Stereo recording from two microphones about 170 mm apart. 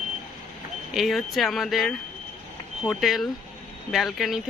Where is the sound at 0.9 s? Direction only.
Centre (ahead or behind).